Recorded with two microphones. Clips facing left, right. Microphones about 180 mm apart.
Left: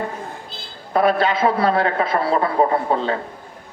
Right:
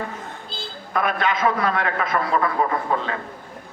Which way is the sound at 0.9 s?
30° left (ahead or behind).